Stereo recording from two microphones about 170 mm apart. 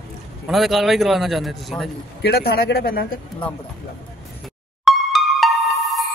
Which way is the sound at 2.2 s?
70° left (ahead or behind).